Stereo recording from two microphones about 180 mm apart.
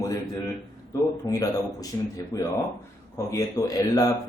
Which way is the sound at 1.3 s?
20° left (ahead or behind).